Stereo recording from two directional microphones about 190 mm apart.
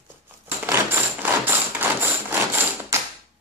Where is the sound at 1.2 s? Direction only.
10° right (ahead or behind).